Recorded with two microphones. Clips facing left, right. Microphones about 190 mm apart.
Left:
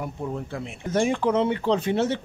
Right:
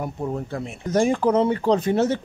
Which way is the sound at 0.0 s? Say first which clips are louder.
Right 3 dB; 45° right (ahead or behind).